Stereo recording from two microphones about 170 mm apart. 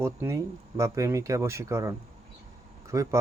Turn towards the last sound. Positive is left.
turn(degrees=-20)  # may be behind; listen again after turning